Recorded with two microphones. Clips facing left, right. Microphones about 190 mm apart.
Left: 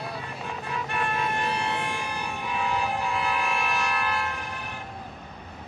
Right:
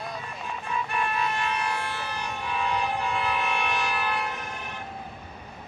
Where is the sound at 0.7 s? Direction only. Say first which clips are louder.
Right 1 dB; 55° left (ahead or behind).